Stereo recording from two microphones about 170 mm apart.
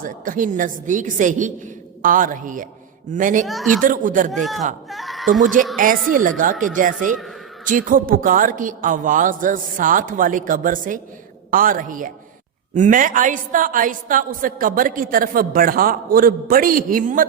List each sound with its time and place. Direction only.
0.0 s speech: 50° right (ahead or behind)
3.4 s speech: centre (ahead or behind)
3.8 s speech: 50° right (ahead or behind)
4.3 s speech: centre (ahead or behind)
4.9 s a sound: centre (ahead or behind)
5.7 s a woman's voice: 55° right (ahead or behind)